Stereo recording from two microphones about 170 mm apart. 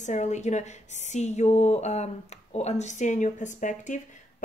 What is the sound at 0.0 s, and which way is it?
Speech, 45° left (ahead or behind).